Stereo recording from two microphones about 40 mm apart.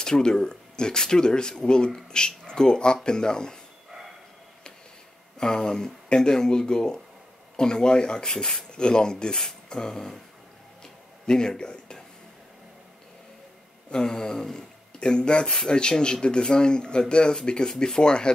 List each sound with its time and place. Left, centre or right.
0.0 s speech: centre
5.4 s speech: centre
10.8 s a sound: centre
13.8 s speech: centre